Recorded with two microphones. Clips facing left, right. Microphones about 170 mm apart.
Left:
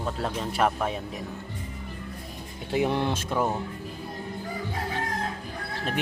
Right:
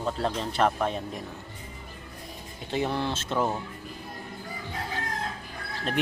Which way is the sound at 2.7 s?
10° left (ahead or behind).